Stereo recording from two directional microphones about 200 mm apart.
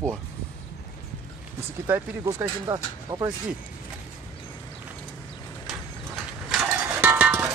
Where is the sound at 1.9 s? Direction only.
20° right (ahead or behind).